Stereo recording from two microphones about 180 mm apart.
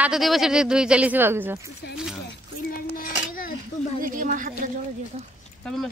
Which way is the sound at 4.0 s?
50° right (ahead or behind).